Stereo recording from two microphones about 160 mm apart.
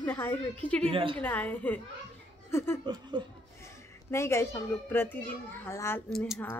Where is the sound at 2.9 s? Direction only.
25° right (ahead or behind).